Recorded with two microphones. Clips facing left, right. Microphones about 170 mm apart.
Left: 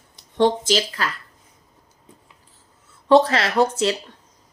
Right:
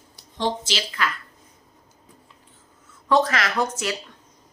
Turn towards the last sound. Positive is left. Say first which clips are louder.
# left 6 dB
turn(degrees=30)  # may be behind; listen again after turning